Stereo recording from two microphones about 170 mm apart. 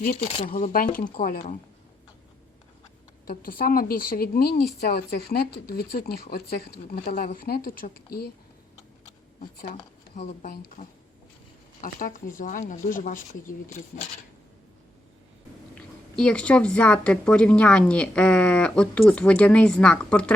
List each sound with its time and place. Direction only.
0.4 s a woman's voice: 50° left (ahead or behind)
3.2 s a woman's voice: 55° left (ahead or behind)
11.8 s speech: 55° left (ahead or behind)
15.7 s a woman's voice: 5° left (ahead or behind)